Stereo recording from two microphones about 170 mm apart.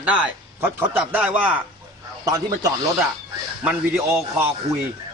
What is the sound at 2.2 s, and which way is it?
Speech, 20° right (ahead or behind).